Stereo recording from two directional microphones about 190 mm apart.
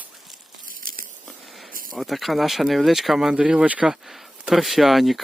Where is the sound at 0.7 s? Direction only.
45° right (ahead or behind).